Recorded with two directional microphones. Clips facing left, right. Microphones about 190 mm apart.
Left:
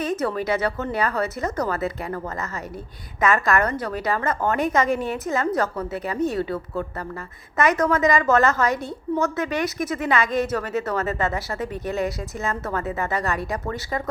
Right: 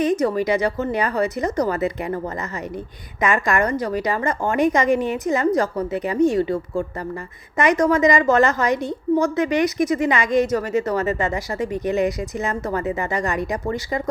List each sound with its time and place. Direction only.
0.2 s a woman's voice: 15° right (ahead or behind)
7.5 s a woman's voice: 15° right (ahead or behind)